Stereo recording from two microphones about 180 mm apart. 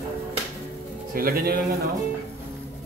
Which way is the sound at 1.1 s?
55° right (ahead or behind).